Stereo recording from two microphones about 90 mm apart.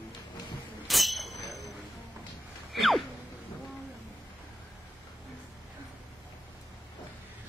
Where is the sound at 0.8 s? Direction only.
Centre (ahead or behind).